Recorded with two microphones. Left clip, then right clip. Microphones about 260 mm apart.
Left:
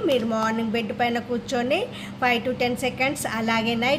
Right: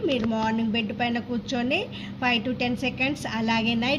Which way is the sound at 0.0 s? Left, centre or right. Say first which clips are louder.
Left 3 dB; left.